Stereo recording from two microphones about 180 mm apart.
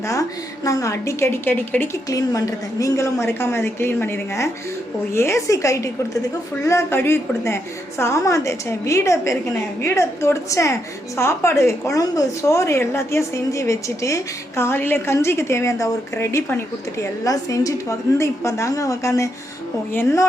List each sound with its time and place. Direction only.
0.1 s a woman's voice: 15° left (ahead or behind)